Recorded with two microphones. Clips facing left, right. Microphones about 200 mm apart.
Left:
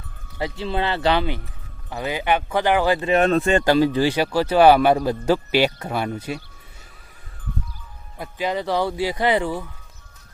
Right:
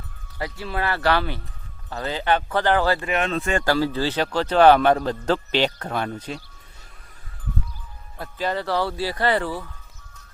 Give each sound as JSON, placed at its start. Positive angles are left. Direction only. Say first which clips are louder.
{"t": 0.3, "sound": "speech", "louder": "left 4 dB", "side_deg": 25}
{"t": 3.1, "sound": "speech", "louder": "left 7 dB", "side_deg": 40}
{"t": 3.4, "sound": "speech", "louder": "left 5 dB", "side_deg": 20}
{"t": 8.2, "sound": "speech", "louder": "left 1 dB", "side_deg": 15}